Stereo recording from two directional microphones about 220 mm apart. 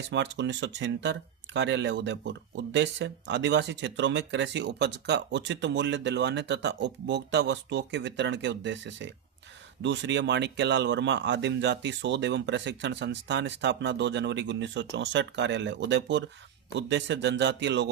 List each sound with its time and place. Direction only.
0.1 s speech: 55° right (ahead or behind)